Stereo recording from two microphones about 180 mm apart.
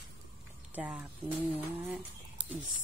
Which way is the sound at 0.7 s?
10° right (ahead or behind).